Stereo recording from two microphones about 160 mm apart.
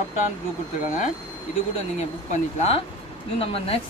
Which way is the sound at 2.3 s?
40° left (ahead or behind).